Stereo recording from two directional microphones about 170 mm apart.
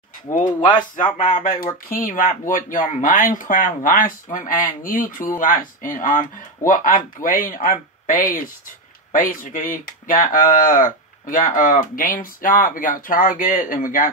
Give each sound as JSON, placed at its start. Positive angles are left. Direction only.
{"t": 0.4, "sound": "speech", "side_deg": 25}
{"t": 1.4, "sound": "speech", "side_deg": 55}